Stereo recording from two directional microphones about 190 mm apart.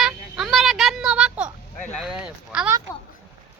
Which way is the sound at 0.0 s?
Centre (ahead or behind).